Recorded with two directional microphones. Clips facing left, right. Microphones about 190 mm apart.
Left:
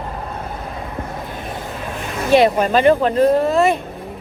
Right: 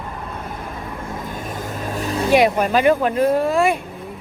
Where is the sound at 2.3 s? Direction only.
10° right (ahead or behind).